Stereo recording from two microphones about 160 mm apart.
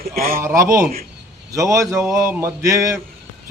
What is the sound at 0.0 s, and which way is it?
Speech, 70° right (ahead or behind).